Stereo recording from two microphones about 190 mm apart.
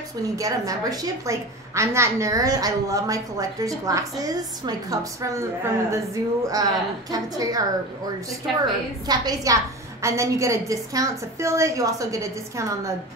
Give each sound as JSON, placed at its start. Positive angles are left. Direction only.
{"t": 0.4, "sound": "a woman's voice", "side_deg": -20}
{"t": 8.5, "sound": "a woman's voice", "side_deg": 0}
{"t": 9.0, "sound": "a woman's voice", "side_deg": -20}